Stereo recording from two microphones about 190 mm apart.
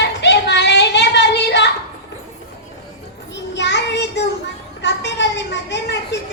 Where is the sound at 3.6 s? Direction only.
65° left (ahead or behind).